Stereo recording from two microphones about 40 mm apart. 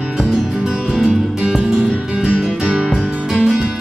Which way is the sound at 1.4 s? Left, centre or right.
Centre.